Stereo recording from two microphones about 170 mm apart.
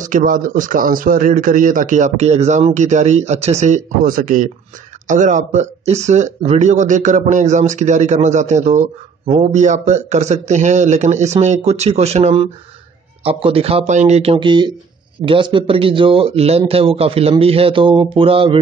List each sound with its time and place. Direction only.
0.0 s a man's voice: 50° right (ahead or behind); by 18.6 s 30° right (ahead or behind)